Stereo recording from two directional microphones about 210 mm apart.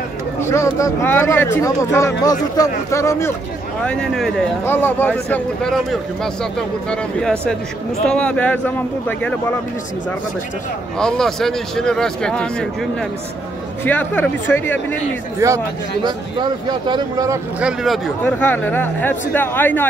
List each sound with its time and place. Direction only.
0.4 s speech: 15° left (ahead or behind)
11.0 s speech: 5° left (ahead or behind)
13.8 s speech: 10° left (ahead or behind)
15.4 s speech: 15° right (ahead or behind)
17.6 s speech: centre (ahead or behind)